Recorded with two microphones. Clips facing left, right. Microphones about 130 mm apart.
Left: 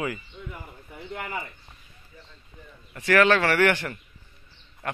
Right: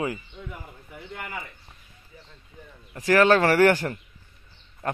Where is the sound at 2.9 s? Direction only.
35° right (ahead or behind).